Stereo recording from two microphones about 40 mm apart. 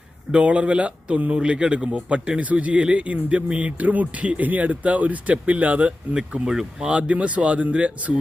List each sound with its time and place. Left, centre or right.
0.3 s a man's voice: right
6.1 s a man's voice: right
6.8 s speech: right